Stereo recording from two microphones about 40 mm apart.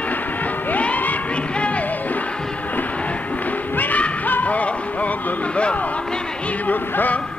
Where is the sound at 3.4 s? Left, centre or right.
Left.